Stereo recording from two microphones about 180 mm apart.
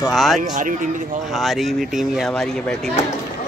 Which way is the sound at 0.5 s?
45° right (ahead or behind).